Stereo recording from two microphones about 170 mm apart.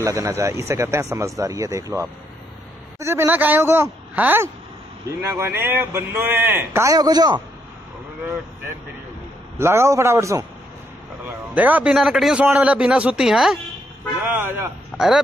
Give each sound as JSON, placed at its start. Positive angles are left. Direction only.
{"t": 0.0, "sound": "a man's voice", "side_deg": -20}
{"t": 9.6, "sound": "a man's voice", "side_deg": -15}